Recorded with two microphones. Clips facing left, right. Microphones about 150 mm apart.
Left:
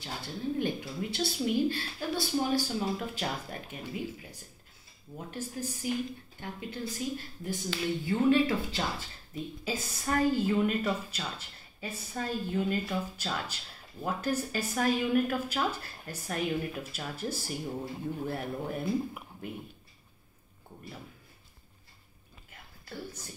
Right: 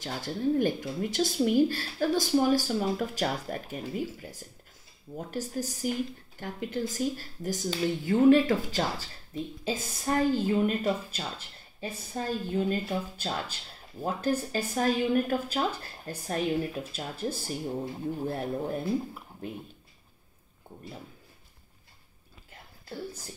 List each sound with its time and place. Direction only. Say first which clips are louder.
0.0 s speech: right 6 dB; 45° right (ahead or behind)
9.3 s a woman's voice: right 3 dB; 30° right (ahead or behind)
22.8 s speech: right 3 dB; 30° right (ahead or behind)